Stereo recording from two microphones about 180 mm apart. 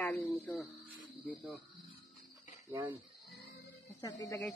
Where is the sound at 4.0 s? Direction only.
20° left (ahead or behind).